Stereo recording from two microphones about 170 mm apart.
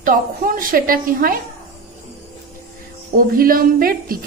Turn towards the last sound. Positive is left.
turn(degrees=-60)  # may be behind; listen again after turning